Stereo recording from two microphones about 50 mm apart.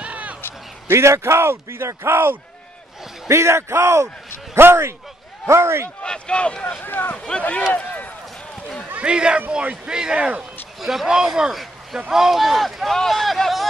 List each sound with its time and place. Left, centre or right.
0.0 s basketball bounce: right
0.8 s speech: right
3.3 s speech: right
4.6 s speech: right
6.0 s speech: centre
6.6 s speech: left
7.2 s speech: left
7.7 s run: left
9.0 s a man's voice: centre
10.8 s speech: centre
11.1 s speech: centre